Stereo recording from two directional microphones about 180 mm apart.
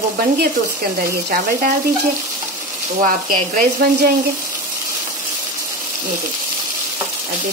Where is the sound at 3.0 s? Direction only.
50° right (ahead or behind).